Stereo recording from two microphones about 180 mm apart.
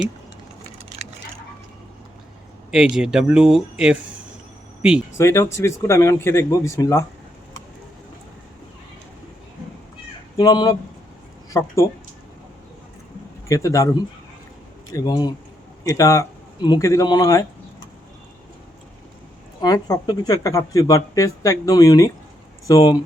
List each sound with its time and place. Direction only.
2.7 s speech: 5° right (ahead or behind)
5.1 s speech: 15° left (ahead or behind)
10.3 s speech: 25° left (ahead or behind)
13.5 s speech: 15° left (ahead or behind)
19.6 s speech: 20° left (ahead or behind)